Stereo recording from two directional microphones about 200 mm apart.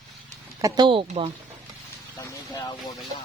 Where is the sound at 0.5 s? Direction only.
20° right (ahead or behind).